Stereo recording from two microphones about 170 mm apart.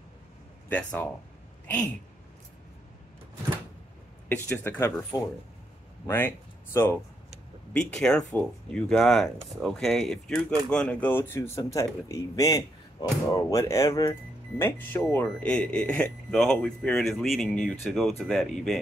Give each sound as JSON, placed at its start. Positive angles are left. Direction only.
{"t": 0.7, "sound": "speech", "side_deg": 10}
{"t": 4.3, "sound": "speech", "side_deg": 15}